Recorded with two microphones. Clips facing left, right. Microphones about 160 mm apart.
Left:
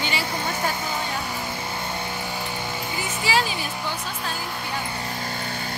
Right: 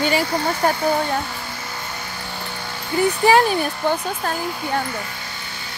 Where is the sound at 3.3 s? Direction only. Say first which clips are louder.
Right 8 dB; 55° right (ahead or behind).